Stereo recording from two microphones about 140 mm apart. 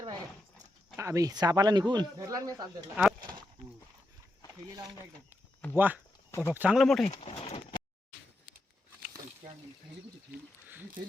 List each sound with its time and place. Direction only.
0.9 s speech: 20° right (ahead or behind)
2.9 s speech: 5° right (ahead or behind)
4.7 s speech: 25° right (ahead or behind)
5.7 s speech: 15° right (ahead or behind)
6.7 s speech: 5° left (ahead or behind)
7.1 s speech: 50° left (ahead or behind)